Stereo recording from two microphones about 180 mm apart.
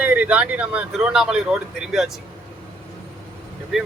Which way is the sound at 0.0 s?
10° right (ahead or behind).